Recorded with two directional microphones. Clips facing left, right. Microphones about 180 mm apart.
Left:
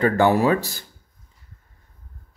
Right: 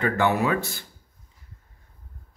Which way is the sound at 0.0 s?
35° left (ahead or behind).